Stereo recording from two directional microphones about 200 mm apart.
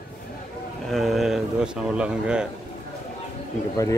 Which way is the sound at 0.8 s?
Centre (ahead or behind).